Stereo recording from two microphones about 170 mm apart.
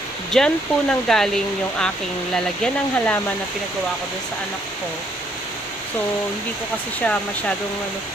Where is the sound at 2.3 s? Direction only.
5° left (ahead or behind).